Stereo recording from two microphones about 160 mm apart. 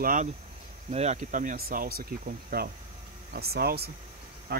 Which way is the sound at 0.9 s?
45° right (ahead or behind).